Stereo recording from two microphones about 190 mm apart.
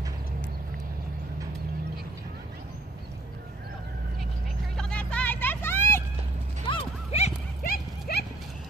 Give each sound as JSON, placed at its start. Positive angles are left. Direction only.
{"t": 4.7, "sound": "vehicle", "side_deg": 5}
{"t": 6.7, "sound": "clip-clop", "side_deg": 35}
{"t": 7.6, "sound": "horse", "side_deg": 55}